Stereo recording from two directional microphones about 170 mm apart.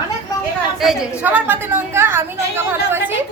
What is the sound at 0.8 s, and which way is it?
A woman's voice, 5° right (ahead or behind).